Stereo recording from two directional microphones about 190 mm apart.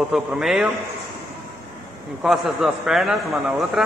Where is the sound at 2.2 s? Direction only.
Centre (ahead or behind).